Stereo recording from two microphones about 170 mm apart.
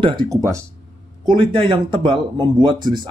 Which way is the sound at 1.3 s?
30° right (ahead or behind).